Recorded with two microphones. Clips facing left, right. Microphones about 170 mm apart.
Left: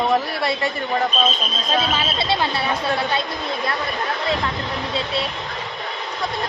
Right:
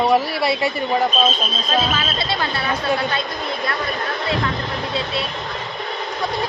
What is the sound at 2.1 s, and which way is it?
Speech, 25° left (ahead or behind).